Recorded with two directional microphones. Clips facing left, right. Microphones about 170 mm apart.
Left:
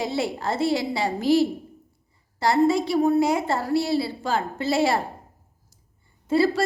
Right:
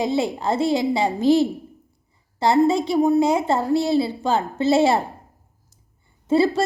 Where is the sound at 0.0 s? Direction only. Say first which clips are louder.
Right 4 dB; 20° right (ahead or behind).